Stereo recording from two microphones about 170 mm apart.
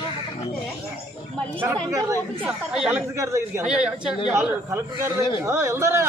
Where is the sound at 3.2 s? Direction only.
15° right (ahead or behind).